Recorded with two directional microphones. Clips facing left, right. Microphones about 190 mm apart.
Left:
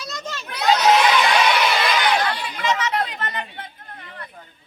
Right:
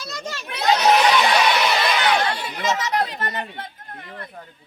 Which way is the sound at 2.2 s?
25° right (ahead or behind).